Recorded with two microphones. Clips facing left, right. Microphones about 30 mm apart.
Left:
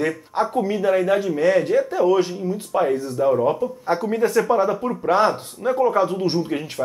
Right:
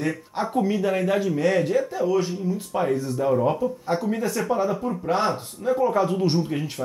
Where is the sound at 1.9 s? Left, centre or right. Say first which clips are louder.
Left 6 dB; left.